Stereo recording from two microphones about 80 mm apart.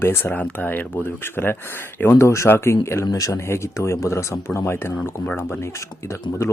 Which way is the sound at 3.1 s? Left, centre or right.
Left.